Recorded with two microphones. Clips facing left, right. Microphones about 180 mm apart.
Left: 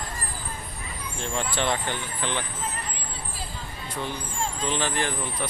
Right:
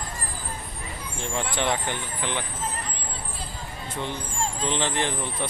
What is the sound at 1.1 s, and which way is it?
Speech, 15° right (ahead or behind).